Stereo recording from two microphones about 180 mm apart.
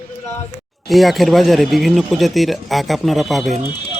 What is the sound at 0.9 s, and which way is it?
Speech, centre (ahead or behind).